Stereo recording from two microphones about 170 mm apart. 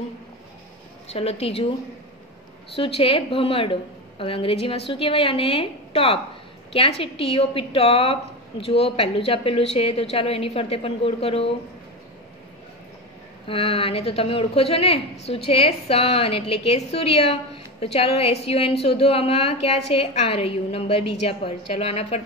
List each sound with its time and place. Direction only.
1.0 s a woman's voice: 35° left (ahead or behind)
2.7 s a woman's voice: 35° left (ahead or behind)
13.5 s a woman's voice: 35° left (ahead or behind)